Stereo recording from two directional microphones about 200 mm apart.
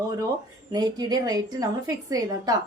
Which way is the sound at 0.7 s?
20° right (ahead or behind).